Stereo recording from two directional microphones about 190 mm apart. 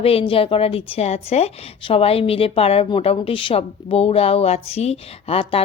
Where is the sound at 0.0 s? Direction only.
30° left (ahead or behind).